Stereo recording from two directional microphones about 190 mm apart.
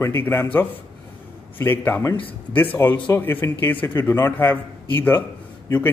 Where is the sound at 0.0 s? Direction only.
10° left (ahead or behind).